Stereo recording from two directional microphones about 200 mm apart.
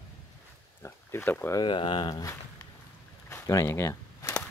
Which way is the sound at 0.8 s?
10° left (ahead or behind).